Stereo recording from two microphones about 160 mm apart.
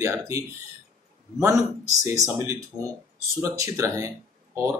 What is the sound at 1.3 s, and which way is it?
Speech, 5° right (ahead or behind).